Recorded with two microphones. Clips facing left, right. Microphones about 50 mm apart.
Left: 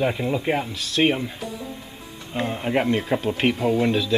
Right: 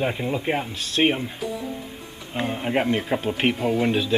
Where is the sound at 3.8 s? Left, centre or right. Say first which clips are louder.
Even; right.